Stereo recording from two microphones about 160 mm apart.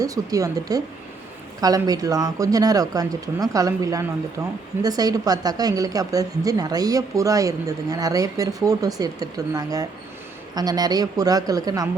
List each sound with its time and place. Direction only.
0.0 s speech: 20° right (ahead or behind)